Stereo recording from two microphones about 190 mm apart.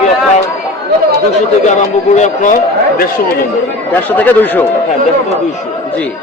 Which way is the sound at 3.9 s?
10° left (ahead or behind).